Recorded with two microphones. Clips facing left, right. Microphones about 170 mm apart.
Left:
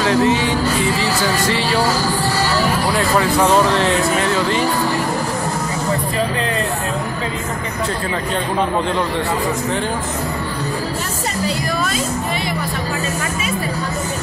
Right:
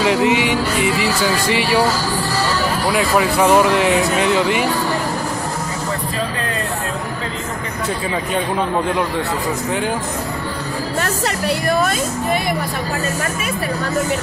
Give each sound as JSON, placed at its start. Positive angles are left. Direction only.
{"t": 0.0, "sound": "speech", "side_deg": -15}
{"t": 2.9, "sound": "speech", "side_deg": -10}
{"t": 11.0, "sound": "music", "side_deg": -65}